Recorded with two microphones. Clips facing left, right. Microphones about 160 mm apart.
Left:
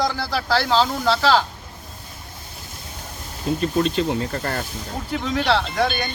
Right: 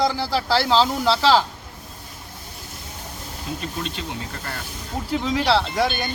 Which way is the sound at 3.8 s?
45° left (ahead or behind).